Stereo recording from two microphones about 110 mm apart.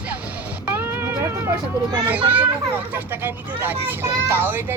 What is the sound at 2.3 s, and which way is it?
A child's voice, 15° right (ahead or behind).